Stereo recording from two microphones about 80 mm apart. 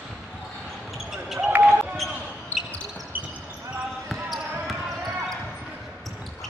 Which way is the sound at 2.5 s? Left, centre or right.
Centre.